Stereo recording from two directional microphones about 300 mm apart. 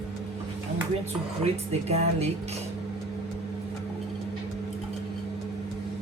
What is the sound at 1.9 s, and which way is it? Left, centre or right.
Music, right.